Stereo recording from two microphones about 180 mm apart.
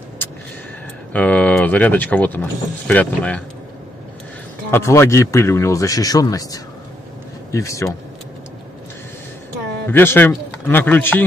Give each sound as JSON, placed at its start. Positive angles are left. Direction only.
{"t": 1.1, "sound": "speech", "side_deg": 10}
{"t": 4.6, "sound": "speech", "side_deg": 15}
{"t": 9.8, "sound": "speech", "side_deg": 10}